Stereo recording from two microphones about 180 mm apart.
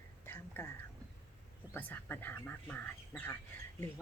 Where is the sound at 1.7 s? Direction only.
10° left (ahead or behind).